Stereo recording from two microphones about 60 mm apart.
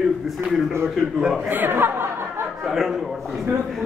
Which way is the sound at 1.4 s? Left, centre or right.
Right.